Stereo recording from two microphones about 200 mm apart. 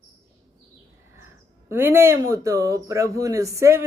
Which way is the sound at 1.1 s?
10° right (ahead or behind).